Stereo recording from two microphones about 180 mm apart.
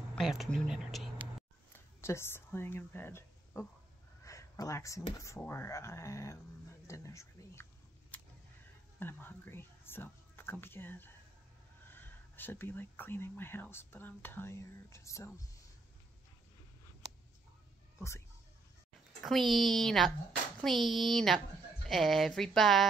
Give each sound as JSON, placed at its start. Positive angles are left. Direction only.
{"t": 0.1, "sound": "speech", "side_deg": 0}
{"t": 1.7, "sound": "a sound", "side_deg": 15}
{"t": 5.2, "sound": "speech", "side_deg": 15}
{"t": 9.0, "sound": "speech", "side_deg": 10}
{"t": 19.2, "sound": "speech", "side_deg": 0}